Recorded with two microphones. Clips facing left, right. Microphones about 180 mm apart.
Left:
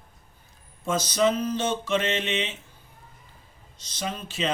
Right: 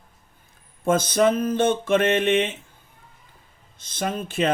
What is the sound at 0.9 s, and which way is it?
Speech, 55° right (ahead or behind).